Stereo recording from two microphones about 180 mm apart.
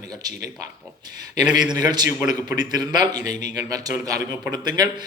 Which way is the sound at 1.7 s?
25° right (ahead or behind).